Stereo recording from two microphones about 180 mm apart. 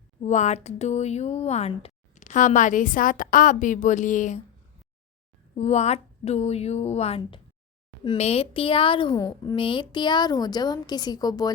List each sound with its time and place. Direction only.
0.2 s speech: 40° left (ahead or behind)
5.5 s a woman's voice: 40° left (ahead or behind); by 11.5 s 20° left (ahead or behind)